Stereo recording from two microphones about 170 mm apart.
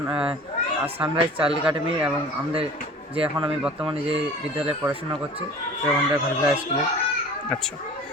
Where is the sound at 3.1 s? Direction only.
35° right (ahead or behind).